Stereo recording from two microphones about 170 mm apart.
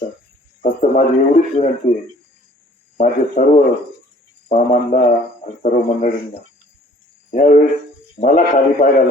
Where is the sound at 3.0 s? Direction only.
50° left (ahead or behind).